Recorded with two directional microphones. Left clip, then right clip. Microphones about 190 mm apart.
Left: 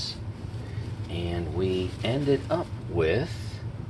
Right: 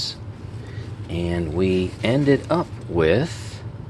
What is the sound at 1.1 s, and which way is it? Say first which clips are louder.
Speech: right 7 dB; 60° right (ahead or behind).